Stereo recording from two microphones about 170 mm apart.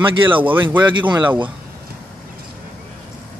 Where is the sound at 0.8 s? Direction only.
25° right (ahead or behind).